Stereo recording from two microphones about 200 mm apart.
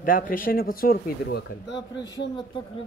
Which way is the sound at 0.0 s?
45° left (ahead or behind).